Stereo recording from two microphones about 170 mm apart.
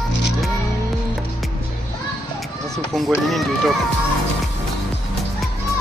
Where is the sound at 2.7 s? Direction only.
Centre (ahead or behind).